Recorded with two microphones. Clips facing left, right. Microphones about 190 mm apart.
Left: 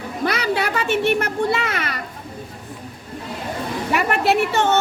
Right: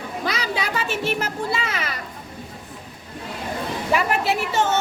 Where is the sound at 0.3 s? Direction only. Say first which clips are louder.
Left 5 dB; 60° left (ahead or behind).